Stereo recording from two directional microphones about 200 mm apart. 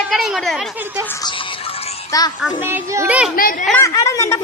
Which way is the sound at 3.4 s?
45° left (ahead or behind).